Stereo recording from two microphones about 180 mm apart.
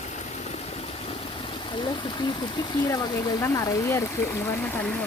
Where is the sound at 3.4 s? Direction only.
15° left (ahead or behind).